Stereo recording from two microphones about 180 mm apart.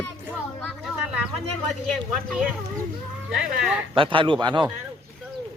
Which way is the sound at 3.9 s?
30° right (ahead or behind).